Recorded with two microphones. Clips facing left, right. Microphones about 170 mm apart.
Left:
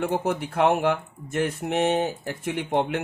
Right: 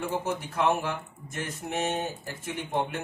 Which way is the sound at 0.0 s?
60° left (ahead or behind).